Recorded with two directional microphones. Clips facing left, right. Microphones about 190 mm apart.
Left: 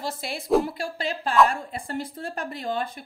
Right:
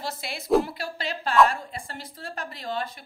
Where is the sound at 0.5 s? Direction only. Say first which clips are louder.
Even; centre (ahead or behind).